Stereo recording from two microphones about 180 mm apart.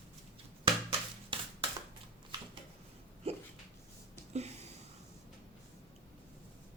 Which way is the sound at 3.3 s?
35° right (ahead or behind).